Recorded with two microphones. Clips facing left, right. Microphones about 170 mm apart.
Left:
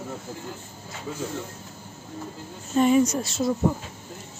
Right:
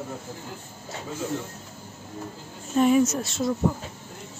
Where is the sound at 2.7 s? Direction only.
Centre (ahead or behind).